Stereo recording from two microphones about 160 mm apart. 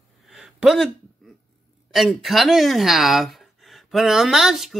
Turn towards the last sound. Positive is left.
turn(degrees=0)  # may be behind; listen again after turning